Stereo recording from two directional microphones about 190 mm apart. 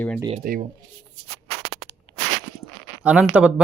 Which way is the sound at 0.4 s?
50° right (ahead or behind).